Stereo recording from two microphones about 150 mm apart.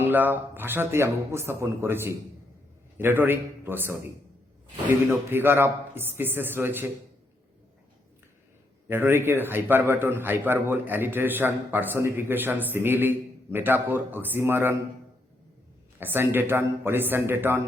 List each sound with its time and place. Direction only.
0.0 s a man's voice: 15° right (ahead or behind)
5.0 s a man's voice: 15° right (ahead or behind)
8.9 s a man's voice: 15° right (ahead or behind)
16.0 s a man's voice: 15° right (ahead or behind)